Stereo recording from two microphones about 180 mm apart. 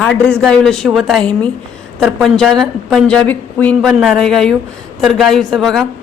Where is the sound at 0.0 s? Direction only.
5° left (ahead or behind).